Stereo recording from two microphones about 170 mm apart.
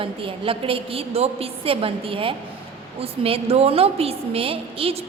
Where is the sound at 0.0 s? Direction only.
30° right (ahead or behind).